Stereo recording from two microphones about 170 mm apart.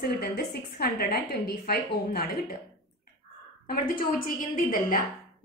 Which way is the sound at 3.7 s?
55° left (ahead or behind).